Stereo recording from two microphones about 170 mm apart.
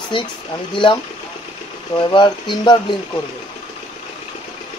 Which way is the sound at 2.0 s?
25° left (ahead or behind).